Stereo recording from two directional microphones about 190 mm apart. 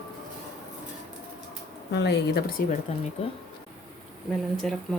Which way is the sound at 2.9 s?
35° left (ahead or behind).